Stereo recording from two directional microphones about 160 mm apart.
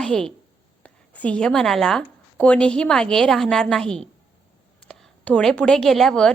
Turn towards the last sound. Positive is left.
turn(degrees=5)  # may be behind; listen again after turning